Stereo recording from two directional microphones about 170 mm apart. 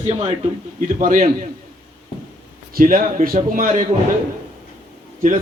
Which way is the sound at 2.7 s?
50° right (ahead or behind).